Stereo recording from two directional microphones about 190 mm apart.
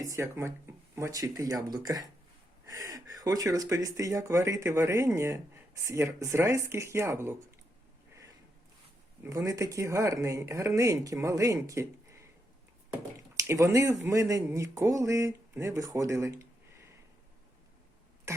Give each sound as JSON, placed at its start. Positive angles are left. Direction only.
{"t": 0.0, "sound": "speech", "side_deg": -15}
{"t": 9.2, "sound": "speech", "side_deg": -15}
{"t": 12.9, "sound": "speech", "side_deg": -15}
{"t": 18.3, "sound": "throat clearing", "side_deg": -15}